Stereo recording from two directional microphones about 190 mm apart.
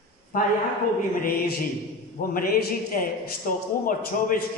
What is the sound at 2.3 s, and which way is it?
A man's voice, 50° left (ahead or behind).